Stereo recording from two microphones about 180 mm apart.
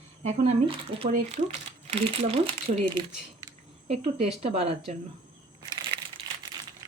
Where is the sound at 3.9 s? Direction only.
35° right (ahead or behind).